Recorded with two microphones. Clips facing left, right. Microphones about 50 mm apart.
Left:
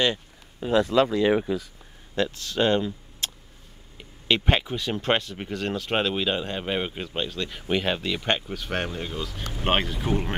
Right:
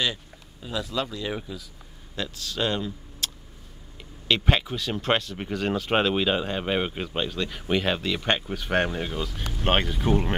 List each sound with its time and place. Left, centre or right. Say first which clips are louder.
0.0 s speech: left 4 dB; left
2.1 s speech: left 5 dB; left
3.2 s a sound: even; left
4.0 s speech: left 1 dB; centre
4.9 s speech: even; centre
5.5 s speech: right 2 dB; centre
8.3 s speech: right 2 dB; centre
9.6 s speech: even; centre